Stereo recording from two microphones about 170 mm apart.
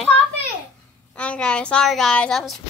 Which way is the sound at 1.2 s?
5° left (ahead or behind).